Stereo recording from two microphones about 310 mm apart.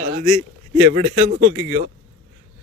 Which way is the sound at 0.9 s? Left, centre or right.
Right.